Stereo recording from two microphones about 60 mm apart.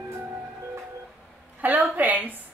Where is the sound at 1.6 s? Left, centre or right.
Right.